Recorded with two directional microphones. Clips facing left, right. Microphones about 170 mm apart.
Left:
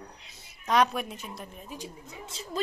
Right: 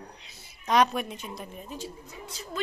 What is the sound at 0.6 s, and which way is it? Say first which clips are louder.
A woman's voice: right 1 dB; centre (ahead or behind).